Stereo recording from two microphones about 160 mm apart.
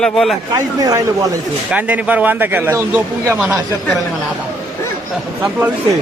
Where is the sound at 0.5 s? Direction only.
25° right (ahead or behind).